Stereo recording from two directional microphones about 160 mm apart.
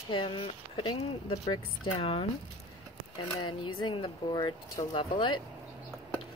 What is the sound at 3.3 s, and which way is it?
Speech, 35° left (ahead or behind).